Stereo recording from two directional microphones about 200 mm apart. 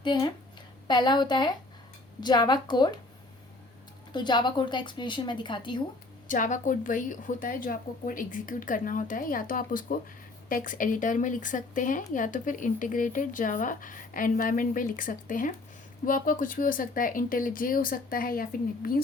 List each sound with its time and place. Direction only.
0.0 s a woman's voice: 25° left (ahead or behind)
4.1 s a woman's voice: 20° left (ahead or behind)
6.2 s a woman's voice: 40° left (ahead or behind)